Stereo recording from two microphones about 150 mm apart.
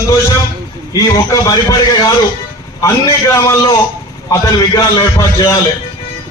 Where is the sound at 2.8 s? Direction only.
20° left (ahead or behind).